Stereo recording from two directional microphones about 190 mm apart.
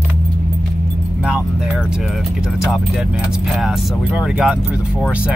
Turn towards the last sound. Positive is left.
turn(degrees=-5)  # may be behind; listen again after turning